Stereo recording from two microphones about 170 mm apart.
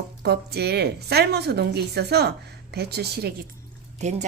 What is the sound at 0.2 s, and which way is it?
Speech, 70° right (ahead or behind).